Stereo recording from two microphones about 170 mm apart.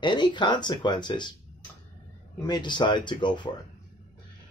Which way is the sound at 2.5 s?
25° left (ahead or behind).